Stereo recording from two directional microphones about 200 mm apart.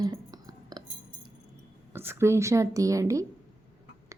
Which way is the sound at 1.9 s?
10° right (ahead or behind).